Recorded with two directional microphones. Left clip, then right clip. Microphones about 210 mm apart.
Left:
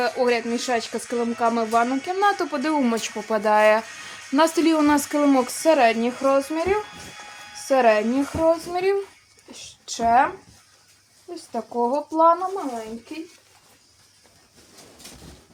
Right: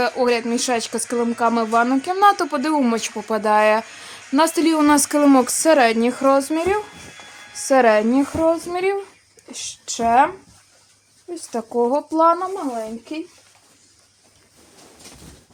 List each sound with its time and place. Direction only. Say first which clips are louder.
0.0 s speech: right 3 dB; 35° right (ahead or behind)
11.3 s speech: right 4 dB; 45° right (ahead or behind)